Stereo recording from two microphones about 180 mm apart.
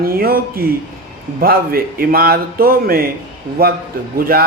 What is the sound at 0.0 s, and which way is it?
A man's voice, 55° right (ahead or behind).